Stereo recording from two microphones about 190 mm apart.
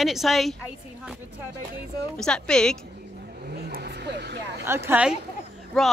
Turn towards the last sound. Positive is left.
turn(degrees=5)  # may be behind; listen again after turning